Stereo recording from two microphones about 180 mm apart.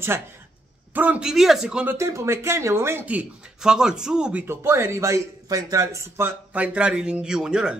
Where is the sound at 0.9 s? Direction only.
10° right (ahead or behind).